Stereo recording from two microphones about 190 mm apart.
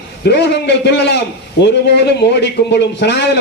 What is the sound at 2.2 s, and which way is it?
A man's voice, 60° left (ahead or behind).